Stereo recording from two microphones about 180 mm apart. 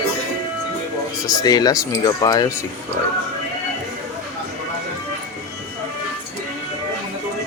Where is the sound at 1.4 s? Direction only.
20° left (ahead or behind).